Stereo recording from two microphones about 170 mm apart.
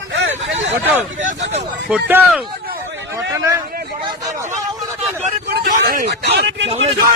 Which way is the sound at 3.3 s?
20° right (ahead or behind).